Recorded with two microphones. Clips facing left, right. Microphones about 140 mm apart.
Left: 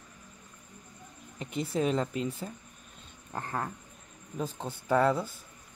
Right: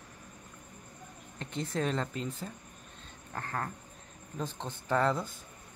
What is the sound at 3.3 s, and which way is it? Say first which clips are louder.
Speech: left 2 dB; 15° left (ahead or behind).